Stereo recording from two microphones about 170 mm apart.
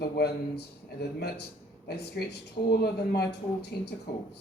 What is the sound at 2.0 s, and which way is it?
A man's voice, 75° left (ahead or behind).